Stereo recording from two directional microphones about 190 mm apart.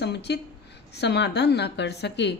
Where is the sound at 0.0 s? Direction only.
60° left (ahead or behind).